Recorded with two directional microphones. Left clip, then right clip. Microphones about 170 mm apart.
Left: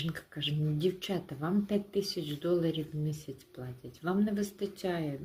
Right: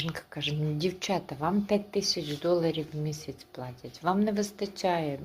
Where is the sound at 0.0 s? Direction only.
25° left (ahead or behind).